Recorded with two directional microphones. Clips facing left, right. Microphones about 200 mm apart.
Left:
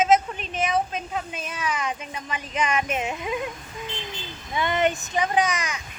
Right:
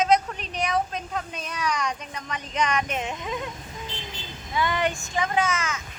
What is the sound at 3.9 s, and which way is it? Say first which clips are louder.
Vehicle: left 3 dB; 35° right (ahead or behind).